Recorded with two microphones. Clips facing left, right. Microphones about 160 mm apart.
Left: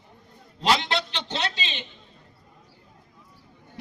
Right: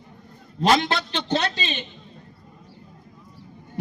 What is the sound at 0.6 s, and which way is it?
A man's voice, 50° right (ahead or behind).